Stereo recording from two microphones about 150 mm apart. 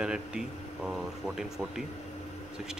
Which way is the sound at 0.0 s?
5° right (ahead or behind).